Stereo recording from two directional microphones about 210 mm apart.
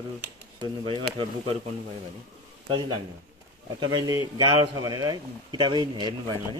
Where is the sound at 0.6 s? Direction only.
25° right (ahead or behind).